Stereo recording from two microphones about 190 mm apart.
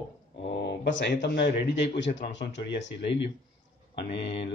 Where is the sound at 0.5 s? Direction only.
65° left (ahead or behind).